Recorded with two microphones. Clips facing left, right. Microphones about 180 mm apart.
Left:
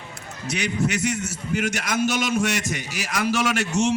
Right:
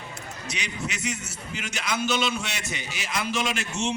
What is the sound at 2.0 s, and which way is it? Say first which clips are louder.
A man's voice: left 5 dB; 90° left.